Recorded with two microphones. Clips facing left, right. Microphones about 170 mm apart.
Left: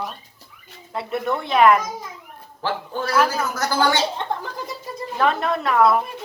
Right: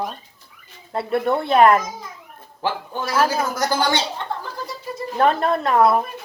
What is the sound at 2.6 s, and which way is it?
Speech, 15° right (ahead or behind).